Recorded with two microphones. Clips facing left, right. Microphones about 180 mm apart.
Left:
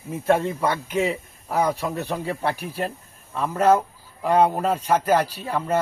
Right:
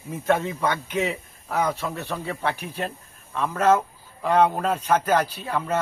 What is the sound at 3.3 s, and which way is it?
Speech, 10° left (ahead or behind).